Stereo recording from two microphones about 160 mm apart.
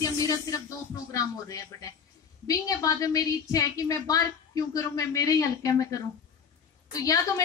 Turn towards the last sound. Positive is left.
turn(degrees=20)  # may be behind; listen again after turning